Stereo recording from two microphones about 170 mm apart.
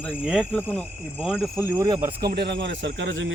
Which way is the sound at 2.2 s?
75° right (ahead or behind).